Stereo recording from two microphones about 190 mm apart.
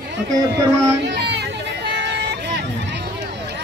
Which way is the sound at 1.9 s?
65° right (ahead or behind).